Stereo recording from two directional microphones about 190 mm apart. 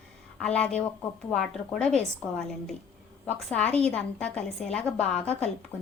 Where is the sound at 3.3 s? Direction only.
5° left (ahead or behind).